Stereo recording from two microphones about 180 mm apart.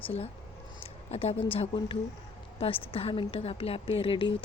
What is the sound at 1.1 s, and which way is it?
A woman's voice, 35° left (ahead or behind).